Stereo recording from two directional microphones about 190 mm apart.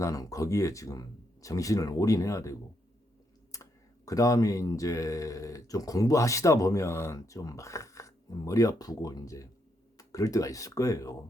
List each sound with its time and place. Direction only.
0.0 s speech: 15° left (ahead or behind)